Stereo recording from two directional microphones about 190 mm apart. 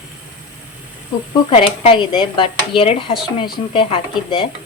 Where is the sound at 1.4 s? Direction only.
30° left (ahead or behind).